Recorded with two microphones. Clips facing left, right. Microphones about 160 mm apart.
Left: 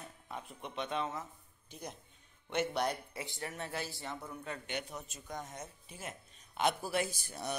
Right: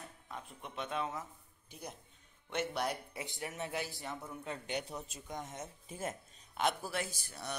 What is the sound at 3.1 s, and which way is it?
Speech, 20° right (ahead or behind).